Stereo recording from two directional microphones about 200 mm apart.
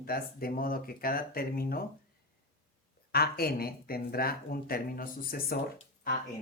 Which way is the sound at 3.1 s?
50° left (ahead or behind).